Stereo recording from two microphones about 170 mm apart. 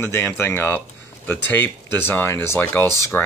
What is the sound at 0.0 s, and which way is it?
Speech, 15° left (ahead or behind).